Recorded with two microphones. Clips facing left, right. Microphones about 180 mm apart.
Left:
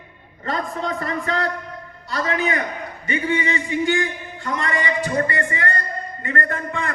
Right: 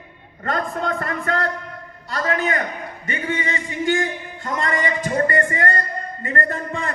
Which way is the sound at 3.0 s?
45° right (ahead or behind).